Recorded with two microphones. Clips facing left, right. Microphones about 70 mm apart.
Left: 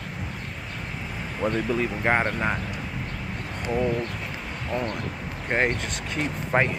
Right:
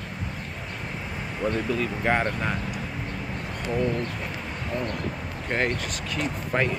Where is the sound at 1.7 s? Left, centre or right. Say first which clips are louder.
Left 1 dB; left.